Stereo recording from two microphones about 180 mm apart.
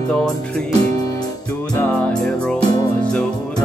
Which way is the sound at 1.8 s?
5° left (ahead or behind).